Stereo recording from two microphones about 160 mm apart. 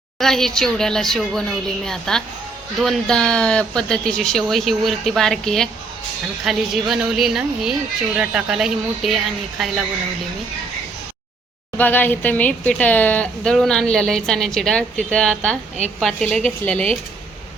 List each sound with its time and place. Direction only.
0.2 s a woman's voice: 5° left (ahead or behind)
11.8 s a woman's voice: 10° left (ahead or behind)